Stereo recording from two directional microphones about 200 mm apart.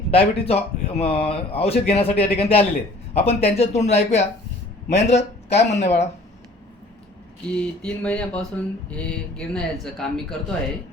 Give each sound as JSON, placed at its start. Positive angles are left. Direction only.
{"t": 0.1, "sound": "speech", "side_deg": 30}
{"t": 7.5, "sound": "speech", "side_deg": 5}